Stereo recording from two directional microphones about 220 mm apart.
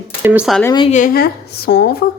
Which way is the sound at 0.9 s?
40° left (ahead or behind).